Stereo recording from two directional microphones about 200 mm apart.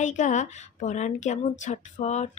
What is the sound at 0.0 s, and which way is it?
A woman's voice, 40° left (ahead or behind).